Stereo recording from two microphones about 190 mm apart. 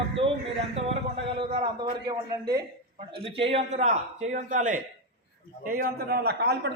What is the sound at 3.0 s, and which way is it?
A man's voice, 30° right (ahead or behind).